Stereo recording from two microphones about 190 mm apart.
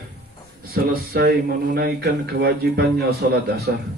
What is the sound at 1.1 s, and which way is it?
Speech, 55° right (ahead or behind).